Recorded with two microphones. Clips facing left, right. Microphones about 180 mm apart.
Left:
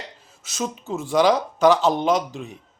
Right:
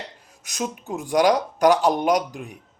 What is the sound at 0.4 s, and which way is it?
Speech, 15° right (ahead or behind).